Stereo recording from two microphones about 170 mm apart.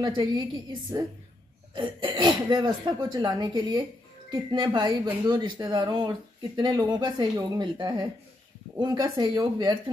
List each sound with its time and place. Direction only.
0.0 s speech: 25° right (ahead or behind)